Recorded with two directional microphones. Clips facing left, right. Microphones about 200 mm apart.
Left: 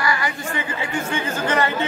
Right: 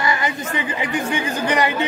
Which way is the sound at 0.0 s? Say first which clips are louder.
Right 2 dB; 20° right (ahead or behind).